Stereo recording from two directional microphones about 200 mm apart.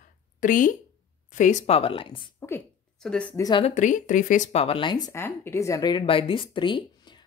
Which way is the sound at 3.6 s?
40° left (ahead or behind).